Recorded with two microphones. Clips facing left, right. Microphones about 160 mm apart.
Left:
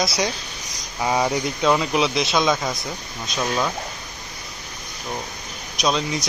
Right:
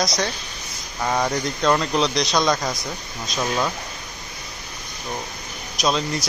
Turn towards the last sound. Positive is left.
turn(degrees=0)  # may be behind; listen again after turning